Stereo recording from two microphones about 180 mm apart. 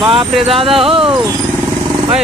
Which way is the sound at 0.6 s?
30° right (ahead or behind).